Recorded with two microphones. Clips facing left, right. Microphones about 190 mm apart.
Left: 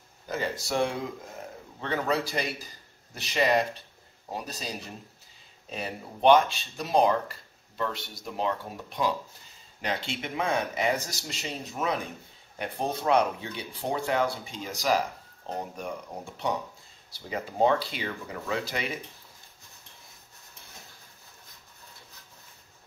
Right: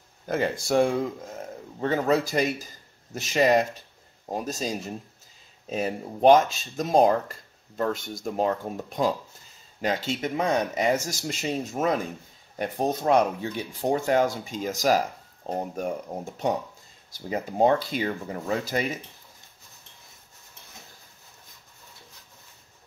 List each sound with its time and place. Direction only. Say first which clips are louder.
0.3 s speech: right 6 dB; 50° right (ahead or behind)